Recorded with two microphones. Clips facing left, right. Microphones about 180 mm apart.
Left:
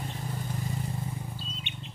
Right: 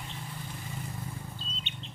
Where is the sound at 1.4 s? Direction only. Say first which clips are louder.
Left 3 dB; 10° left (ahead or behind).